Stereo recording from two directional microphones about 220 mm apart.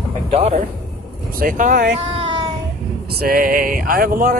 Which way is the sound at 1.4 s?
40° right (ahead or behind).